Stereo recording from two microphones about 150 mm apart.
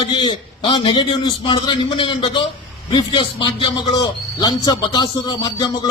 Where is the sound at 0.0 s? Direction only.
30° left (ahead or behind).